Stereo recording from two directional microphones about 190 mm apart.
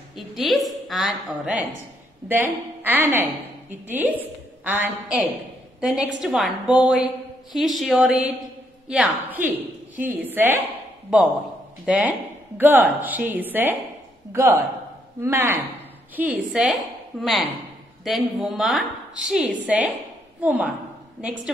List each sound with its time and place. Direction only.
0.1 s a woman's voice: centre (ahead or behind)